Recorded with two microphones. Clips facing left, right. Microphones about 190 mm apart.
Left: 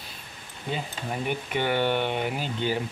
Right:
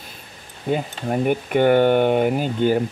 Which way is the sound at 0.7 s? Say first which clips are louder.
Right 9 dB; 50° right (ahead or behind).